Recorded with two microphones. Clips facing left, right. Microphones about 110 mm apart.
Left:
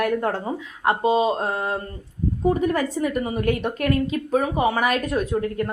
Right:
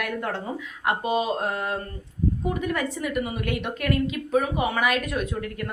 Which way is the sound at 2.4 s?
35° left (ahead or behind).